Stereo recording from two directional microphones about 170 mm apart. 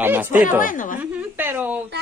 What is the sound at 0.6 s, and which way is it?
Speech, 55° left (ahead or behind).